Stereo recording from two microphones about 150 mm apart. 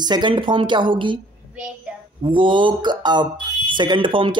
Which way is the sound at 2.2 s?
35° right (ahead or behind).